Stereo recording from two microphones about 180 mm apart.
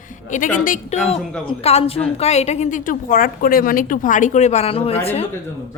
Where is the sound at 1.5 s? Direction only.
35° left (ahead or behind).